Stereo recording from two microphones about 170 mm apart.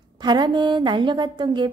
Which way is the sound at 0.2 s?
25° right (ahead or behind).